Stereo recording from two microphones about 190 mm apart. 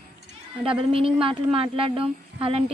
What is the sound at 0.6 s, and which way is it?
Speech, 30° right (ahead or behind).